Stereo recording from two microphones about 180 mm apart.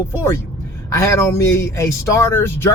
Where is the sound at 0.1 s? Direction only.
15° left (ahead or behind).